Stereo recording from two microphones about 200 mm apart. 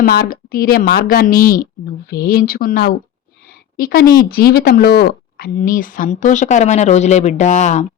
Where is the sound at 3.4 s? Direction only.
50° left (ahead or behind).